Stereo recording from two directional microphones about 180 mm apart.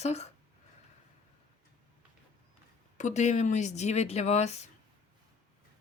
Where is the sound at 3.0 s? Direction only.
40° left (ahead or behind).